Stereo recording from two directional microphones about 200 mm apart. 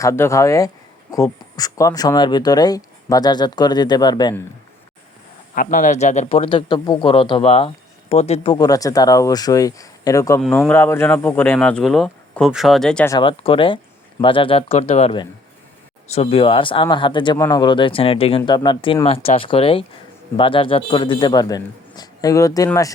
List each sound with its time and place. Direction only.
0.0 s speech: 15° left (ahead or behind)
5.5 s speech: 40° left (ahead or behind)
8.5 s speech: 20° left (ahead or behind)
13.1 s speech: 25° left (ahead or behind)